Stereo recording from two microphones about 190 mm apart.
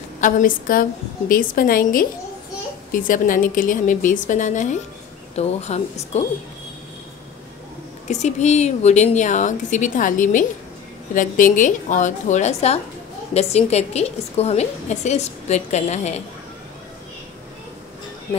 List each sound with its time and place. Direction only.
0.2 s a woman's voice: 45° left (ahead or behind)
8.1 s a woman's voice: 35° left (ahead or behind)